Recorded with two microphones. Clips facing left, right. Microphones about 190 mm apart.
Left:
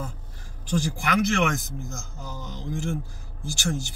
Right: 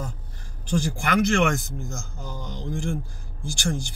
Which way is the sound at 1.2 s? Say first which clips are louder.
Right 4 dB; centre (ahead or behind).